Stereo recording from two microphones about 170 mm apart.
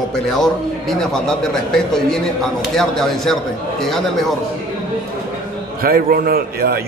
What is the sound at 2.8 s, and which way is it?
Speech, centre (ahead or behind).